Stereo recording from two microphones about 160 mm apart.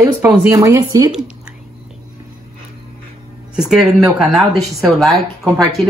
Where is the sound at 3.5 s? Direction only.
5° right (ahead or behind).